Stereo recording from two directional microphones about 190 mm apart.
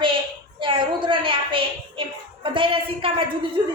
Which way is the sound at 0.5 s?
25° right (ahead or behind).